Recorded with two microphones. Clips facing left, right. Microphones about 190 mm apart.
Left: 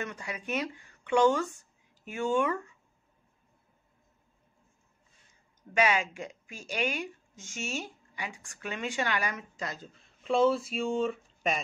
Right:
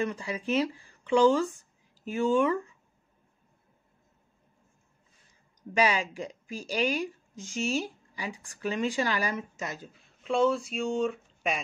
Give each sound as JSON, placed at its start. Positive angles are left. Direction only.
{"t": 0.0, "sound": "speech", "side_deg": -30}
{"t": 5.7, "sound": "speech", "side_deg": -35}
{"t": 9.9, "sound": "speech", "side_deg": 0}